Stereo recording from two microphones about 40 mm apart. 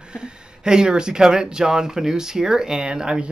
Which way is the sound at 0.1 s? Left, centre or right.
Right.